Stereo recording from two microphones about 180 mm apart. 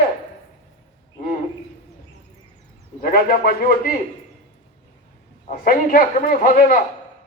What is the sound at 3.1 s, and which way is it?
Speech, 55° left (ahead or behind).